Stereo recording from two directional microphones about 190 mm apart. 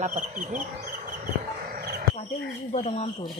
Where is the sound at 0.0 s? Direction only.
40° right (ahead or behind).